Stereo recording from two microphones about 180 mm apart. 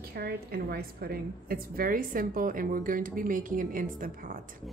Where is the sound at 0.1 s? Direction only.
60° right (ahead or behind).